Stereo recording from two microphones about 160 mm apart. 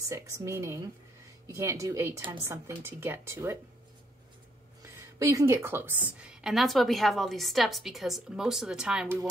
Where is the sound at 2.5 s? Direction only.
15° right (ahead or behind).